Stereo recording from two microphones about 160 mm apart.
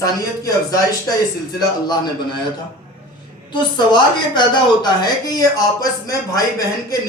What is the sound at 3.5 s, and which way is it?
A woman's voice, 30° left (ahead or behind).